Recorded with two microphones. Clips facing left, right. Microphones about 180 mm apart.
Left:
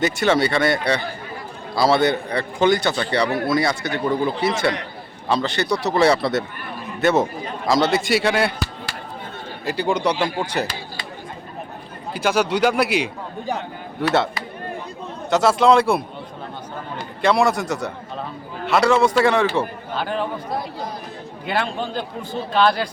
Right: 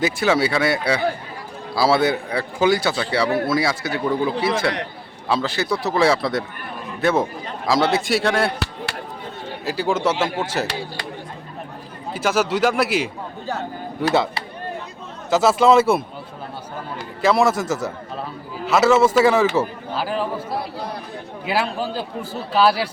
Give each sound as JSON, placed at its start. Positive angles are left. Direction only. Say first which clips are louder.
{"t": 0.0, "sound": "a man's voice", "louder": "even", "side_deg": -5}
{"t": 8.5, "sound": "chop", "louder": "right 1 dB", "side_deg": -70}
{"t": 9.6, "sound": "a man's voice", "louder": "even", "side_deg": -5}
{"t": 12.1, "sound": "a man's voice", "louder": "even", "side_deg": 0}
{"t": 15.3, "sound": "a man's voice", "louder": "even", "side_deg": 0}
{"t": 17.2, "sound": "a man's voice", "louder": "right 1 dB", "side_deg": 0}
{"t": 20.6, "sound": "speech", "louder": "even", "side_deg": -65}
{"t": 21.4, "sound": "a man's voice", "louder": "right 1 dB", "side_deg": -5}